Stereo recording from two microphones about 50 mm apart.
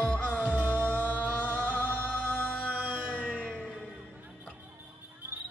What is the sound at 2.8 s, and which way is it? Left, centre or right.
Music, right.